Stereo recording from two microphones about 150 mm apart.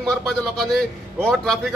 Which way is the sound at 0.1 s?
5° left (ahead or behind).